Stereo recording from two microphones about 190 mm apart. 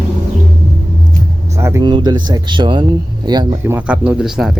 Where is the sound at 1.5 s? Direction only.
15° right (ahead or behind).